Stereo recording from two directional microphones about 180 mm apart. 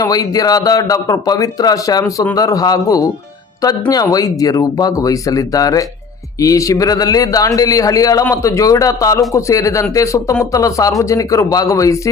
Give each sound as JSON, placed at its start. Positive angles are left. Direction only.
{"t": 0.0, "sound": "speech", "side_deg": 20}